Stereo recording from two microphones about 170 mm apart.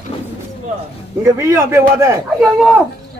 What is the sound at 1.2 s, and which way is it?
A man's voice, 15° right (ahead or behind).